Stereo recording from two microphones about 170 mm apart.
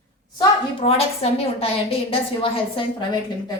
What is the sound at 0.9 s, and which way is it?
A woman's voice, 35° left (ahead or behind).